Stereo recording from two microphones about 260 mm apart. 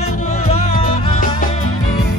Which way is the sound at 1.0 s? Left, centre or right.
Left.